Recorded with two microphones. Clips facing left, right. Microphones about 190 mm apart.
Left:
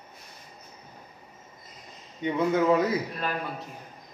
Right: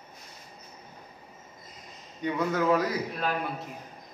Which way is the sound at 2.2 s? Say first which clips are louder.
Left 3 dB; 20° left (ahead or behind).